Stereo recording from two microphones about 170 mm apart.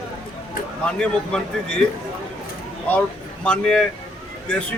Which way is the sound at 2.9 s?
5° left (ahead or behind).